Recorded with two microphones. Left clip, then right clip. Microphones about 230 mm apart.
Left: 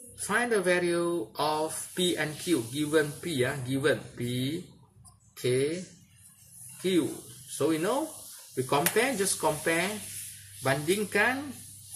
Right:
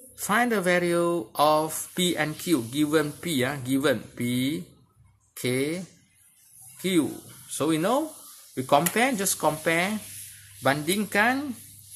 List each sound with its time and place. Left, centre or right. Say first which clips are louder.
0.2 s speech: right 3 dB; right
7.5 s speech: right 3 dB; right